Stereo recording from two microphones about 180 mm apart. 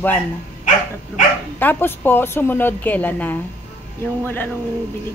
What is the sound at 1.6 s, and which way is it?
Speech, 10° left (ahead or behind).